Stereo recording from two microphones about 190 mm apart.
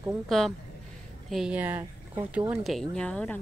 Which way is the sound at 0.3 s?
Centre (ahead or behind).